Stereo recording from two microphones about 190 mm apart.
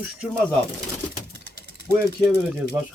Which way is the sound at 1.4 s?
55° right (ahead or behind).